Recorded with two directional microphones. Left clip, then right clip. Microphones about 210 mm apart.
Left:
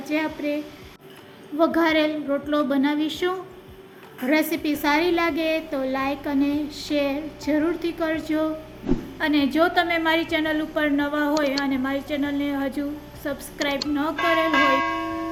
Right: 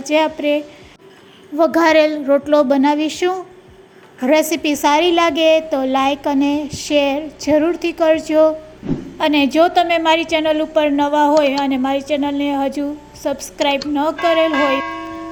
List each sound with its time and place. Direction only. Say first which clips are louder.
0.0 s a woman's voice: right 10 dB; 40° right (ahead or behind)
14.2 s music: right 4 dB; centre (ahead or behind)